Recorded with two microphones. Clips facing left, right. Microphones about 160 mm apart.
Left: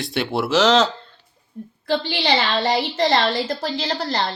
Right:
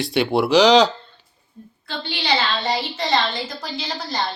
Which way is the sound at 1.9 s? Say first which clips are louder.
Left 4 dB; 60° left (ahead or behind).